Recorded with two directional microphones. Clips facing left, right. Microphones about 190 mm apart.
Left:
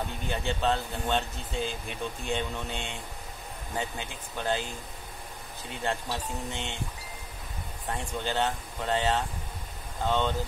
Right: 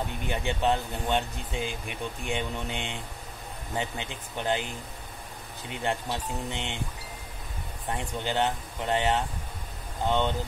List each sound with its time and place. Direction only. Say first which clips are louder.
0.3 s speech: right 1 dB; 15° right (ahead or behind)
5.7 s speech: right 2 dB; 15° right (ahead or behind)
7.9 s speech: right 1 dB; 15° right (ahead or behind)